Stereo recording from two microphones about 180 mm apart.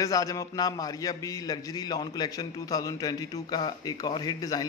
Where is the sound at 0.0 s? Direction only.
20° left (ahead or behind).